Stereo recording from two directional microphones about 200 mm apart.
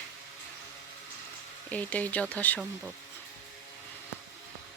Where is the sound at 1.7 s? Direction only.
5° left (ahead or behind).